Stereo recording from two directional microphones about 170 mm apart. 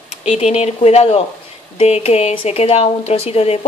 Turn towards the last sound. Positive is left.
turn(degrees=35)  # may be behind; listen again after turning